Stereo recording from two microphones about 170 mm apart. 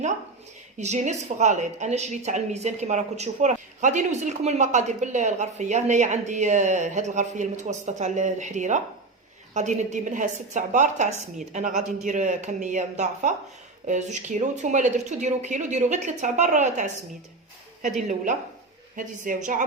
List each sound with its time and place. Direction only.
0.8 s a woman's voice: 40° right (ahead or behind)
18.9 s a woman's voice: 50° right (ahead or behind)